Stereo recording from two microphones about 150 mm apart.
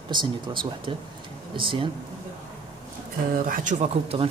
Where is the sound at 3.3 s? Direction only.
65° right (ahead or behind).